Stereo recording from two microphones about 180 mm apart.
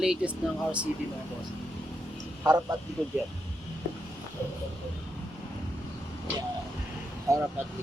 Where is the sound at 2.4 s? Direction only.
20° right (ahead or behind).